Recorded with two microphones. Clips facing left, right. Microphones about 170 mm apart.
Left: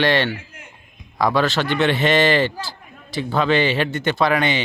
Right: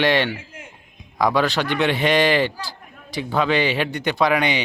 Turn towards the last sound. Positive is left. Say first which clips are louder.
# even
turn(degrees=-15)  # may be behind; listen again after turning